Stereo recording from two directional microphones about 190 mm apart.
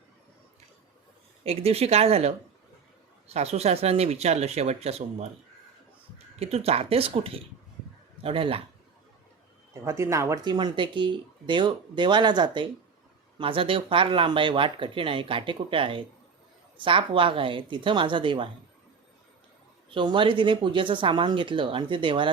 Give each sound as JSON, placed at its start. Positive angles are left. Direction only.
{"t": 1.5, "sound": "speech", "side_deg": -30}
{"t": 9.8, "sound": "speech", "side_deg": -15}
{"t": 19.9, "sound": "speech", "side_deg": -25}